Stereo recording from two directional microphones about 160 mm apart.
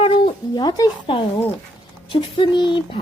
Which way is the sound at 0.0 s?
30° left (ahead or behind).